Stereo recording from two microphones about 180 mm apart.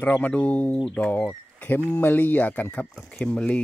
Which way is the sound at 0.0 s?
10° left (ahead or behind).